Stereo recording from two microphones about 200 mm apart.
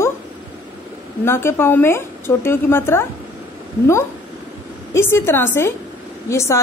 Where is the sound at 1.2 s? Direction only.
10° left (ahead or behind).